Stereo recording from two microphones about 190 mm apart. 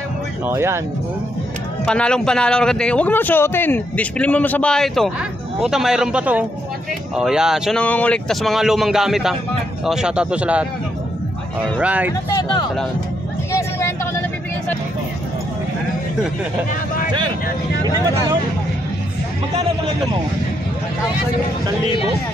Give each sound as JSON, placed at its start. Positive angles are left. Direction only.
{"t": 0.5, "sound": "speech", "side_deg": -15}
{"t": 1.9, "sound": "speech", "side_deg": 5}
{"t": 7.8, "sound": "speech", "side_deg": 10}
{"t": 11.8, "sound": "speech", "side_deg": -5}
{"t": 12.4, "sound": "speech", "side_deg": 25}
{"t": 13.5, "sound": "vehicle", "side_deg": 15}